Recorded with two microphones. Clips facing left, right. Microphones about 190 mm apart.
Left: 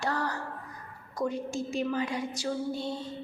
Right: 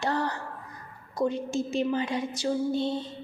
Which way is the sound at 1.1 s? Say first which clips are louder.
Right 4 dB; 25° right (ahead or behind).